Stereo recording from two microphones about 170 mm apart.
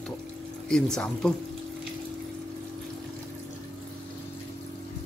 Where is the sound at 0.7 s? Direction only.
5° left (ahead or behind).